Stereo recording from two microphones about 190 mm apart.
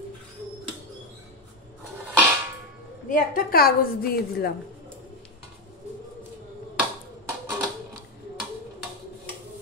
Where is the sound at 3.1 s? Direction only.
50° left (ahead or behind).